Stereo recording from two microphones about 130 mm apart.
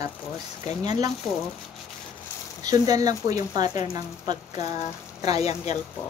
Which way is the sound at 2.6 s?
30° right (ahead or behind).